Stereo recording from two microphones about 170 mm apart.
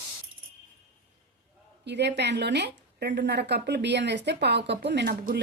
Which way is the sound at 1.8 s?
85° right.